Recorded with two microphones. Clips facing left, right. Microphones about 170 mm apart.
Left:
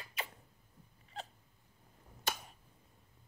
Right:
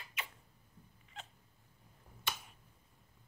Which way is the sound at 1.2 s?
35° left (ahead or behind).